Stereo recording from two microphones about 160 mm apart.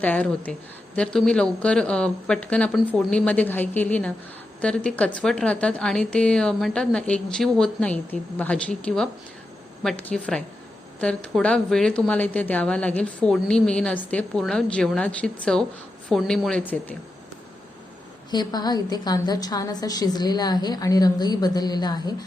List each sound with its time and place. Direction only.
0.0 s a woman's voice: 10° left (ahead or behind)
18.3 s a woman's voice: 25° left (ahead or behind)